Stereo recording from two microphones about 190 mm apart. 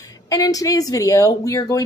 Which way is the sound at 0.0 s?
20° left (ahead or behind).